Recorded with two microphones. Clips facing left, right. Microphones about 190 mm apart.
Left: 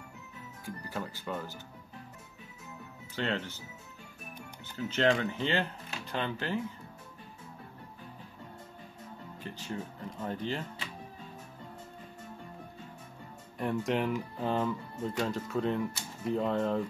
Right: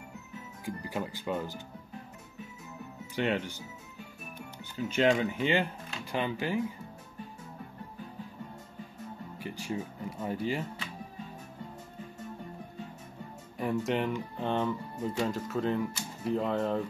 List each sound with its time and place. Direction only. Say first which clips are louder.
0.7 s speech: right 3 dB; 15° right (ahead or behind)
3.2 s speech: right 3 dB; 15° right (ahead or behind)
4.7 s speech: right 2 dB; 15° right (ahead or behind)
9.4 s speech: right 3 dB; 10° right (ahead or behind)
13.6 s speech: right 1 dB; centre (ahead or behind)